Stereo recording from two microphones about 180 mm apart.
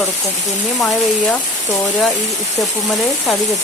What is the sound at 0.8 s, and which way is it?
Speech, 5° left (ahead or behind).